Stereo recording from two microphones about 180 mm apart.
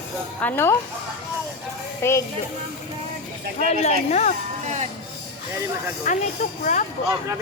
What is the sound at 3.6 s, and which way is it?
Speech, 40° left (ahead or behind).